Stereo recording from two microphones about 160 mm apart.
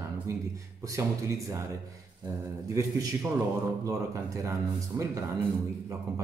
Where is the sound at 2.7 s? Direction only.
20° right (ahead or behind).